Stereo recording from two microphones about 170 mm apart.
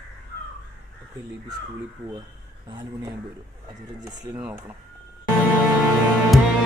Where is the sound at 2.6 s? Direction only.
30° right (ahead or behind).